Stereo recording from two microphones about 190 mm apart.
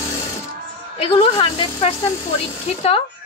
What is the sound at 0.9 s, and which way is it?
Speech, 30° left (ahead or behind).